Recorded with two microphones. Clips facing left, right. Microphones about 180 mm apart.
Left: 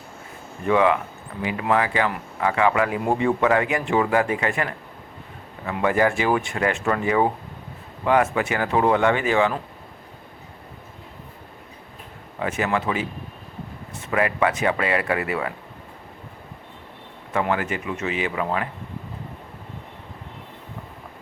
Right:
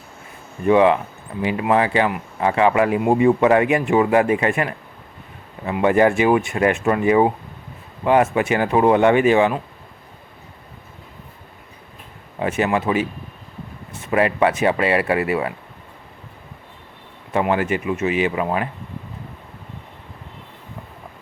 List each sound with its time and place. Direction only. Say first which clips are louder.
0.7 s speech: right 5 dB; 20° right (ahead or behind)
12.4 s speech: right 4 dB; 20° right (ahead or behind)
14.1 s speech: right 4 dB; 25° right (ahead or behind)
17.4 s speech: right 5 dB; 20° right (ahead or behind)